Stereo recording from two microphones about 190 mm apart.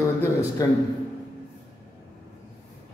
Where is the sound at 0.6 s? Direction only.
15° left (ahead or behind).